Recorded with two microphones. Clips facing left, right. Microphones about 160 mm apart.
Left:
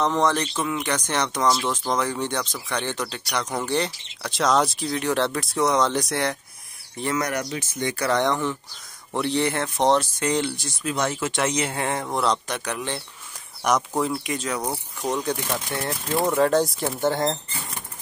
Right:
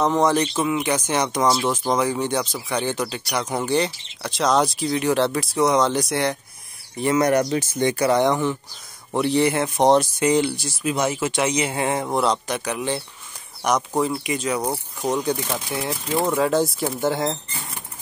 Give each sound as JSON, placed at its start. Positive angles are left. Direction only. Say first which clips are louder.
{"t": 0.0, "sound": "speech", "louder": "right 3 dB", "side_deg": -10}
{"t": 7.2, "sound": "speech", "louder": "right 10 dB", "side_deg": -30}
{"t": 7.9, "sound": "speech", "louder": "right 3 dB", "side_deg": -10}